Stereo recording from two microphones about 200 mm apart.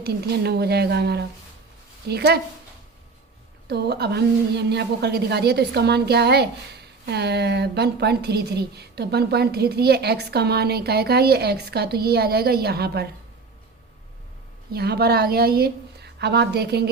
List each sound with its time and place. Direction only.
0.0 s a woman's voice: 55° right (ahead or behind)
3.7 s a woman's voice: 55° right (ahead or behind)
14.7 s a woman's voice: 50° right (ahead or behind)